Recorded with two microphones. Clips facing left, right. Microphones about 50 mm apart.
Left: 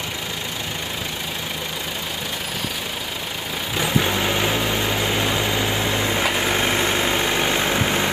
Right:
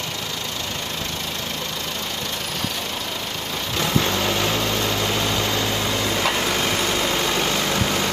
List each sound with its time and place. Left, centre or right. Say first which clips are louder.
3.7 s vehicle: left 1 dB; centre